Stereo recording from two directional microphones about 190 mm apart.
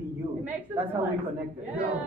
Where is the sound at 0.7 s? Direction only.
10° right (ahead or behind).